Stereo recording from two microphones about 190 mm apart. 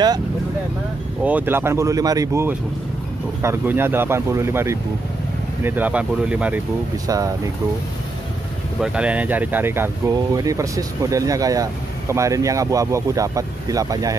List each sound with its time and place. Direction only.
1.2 s speech: 10° right (ahead or behind)
7.1 s speech: 20° right (ahead or behind)
8.8 s speech: 5° right (ahead or behind)